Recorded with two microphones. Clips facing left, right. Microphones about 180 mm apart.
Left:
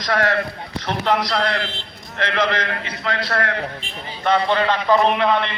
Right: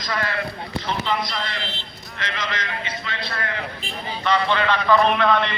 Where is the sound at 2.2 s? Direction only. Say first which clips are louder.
Left 8 dB; 60° left (ahead or behind).